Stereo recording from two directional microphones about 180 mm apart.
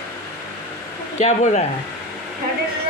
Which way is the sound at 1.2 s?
40° left (ahead or behind).